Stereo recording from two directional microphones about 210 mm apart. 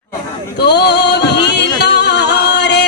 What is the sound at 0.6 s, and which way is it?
Music, 50° left (ahead or behind).